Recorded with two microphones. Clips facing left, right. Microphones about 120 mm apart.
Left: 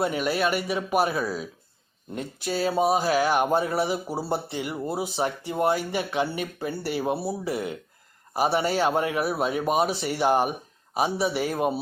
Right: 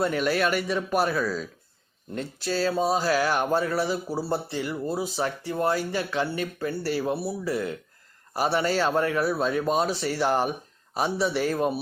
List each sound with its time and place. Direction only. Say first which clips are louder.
0.0 s speech: right 1 dB; 10° left (ahead or behind)